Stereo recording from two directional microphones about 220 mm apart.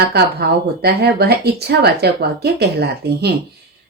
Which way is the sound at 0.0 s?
45° right (ahead or behind).